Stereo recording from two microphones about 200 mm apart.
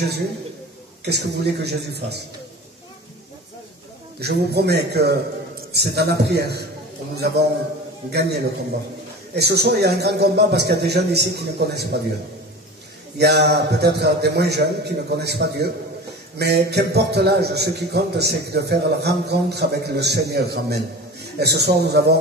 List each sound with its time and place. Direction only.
1.0 s a man's voice: 55° right (ahead or behind)
4.2 s a man's voice: 55° right (ahead or behind)
13.2 s a man's voice: 55° right (ahead or behind)